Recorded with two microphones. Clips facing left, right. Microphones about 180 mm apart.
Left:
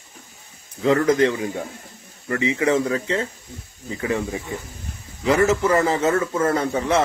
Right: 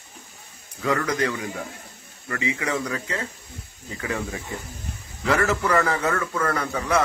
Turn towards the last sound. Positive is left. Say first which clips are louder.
# left 4 dB
turn(degrees=25)  # may be behind; listen again after turning